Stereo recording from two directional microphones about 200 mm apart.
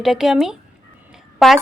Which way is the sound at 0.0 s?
Centre (ahead or behind).